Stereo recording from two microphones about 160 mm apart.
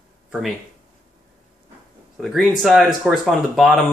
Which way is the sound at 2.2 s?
Centre (ahead or behind).